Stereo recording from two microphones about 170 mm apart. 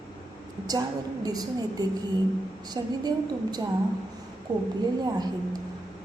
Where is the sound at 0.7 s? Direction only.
20° right (ahead or behind).